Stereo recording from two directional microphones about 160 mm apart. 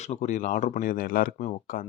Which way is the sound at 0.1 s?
50° left (ahead or behind).